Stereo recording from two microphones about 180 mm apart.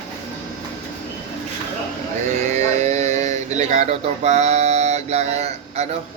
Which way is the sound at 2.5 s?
40° right (ahead or behind).